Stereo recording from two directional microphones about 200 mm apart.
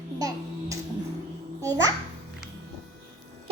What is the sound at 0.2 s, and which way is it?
Music, 15° right (ahead or behind).